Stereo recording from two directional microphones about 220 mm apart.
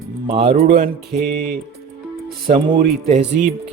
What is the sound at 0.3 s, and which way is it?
Speech, 25° right (ahead or behind).